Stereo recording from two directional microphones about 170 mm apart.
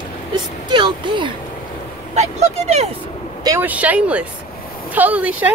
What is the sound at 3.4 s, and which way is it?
Speech, 15° right (ahead or behind).